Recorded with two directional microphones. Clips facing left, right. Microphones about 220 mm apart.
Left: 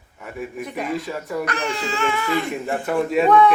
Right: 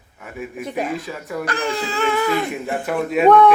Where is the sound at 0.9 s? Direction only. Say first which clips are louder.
Left 1 dB; centre (ahead or behind).